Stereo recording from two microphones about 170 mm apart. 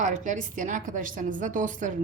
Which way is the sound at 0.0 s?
45° right (ahead or behind).